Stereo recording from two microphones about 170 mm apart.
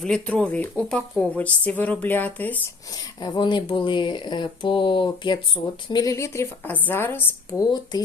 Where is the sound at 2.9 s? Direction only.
25° left (ahead or behind).